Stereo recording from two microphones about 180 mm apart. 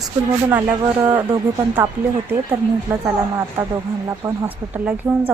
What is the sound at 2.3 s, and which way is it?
Speech, 15° right (ahead or behind).